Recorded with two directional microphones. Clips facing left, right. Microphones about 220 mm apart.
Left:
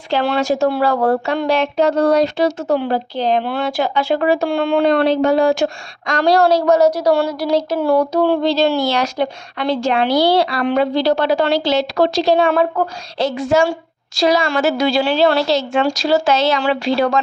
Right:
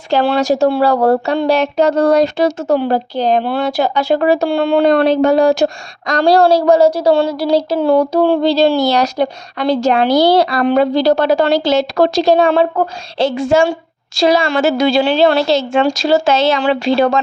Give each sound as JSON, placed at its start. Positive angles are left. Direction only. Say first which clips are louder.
{"t": 0.1, "sound": "speech", "louder": "right 4 dB", "side_deg": -35}
{"t": 12.5, "sound": "a woman's voice", "louder": "right 3 dB", "side_deg": -30}